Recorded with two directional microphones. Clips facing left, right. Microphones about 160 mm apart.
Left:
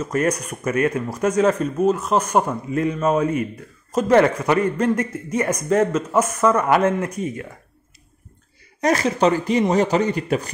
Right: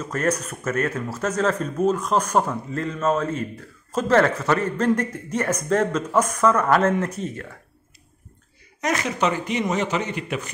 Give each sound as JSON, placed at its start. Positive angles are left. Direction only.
{"t": 0.0, "sound": "speech", "side_deg": 10}
{"t": 8.8, "sound": "speech", "side_deg": 35}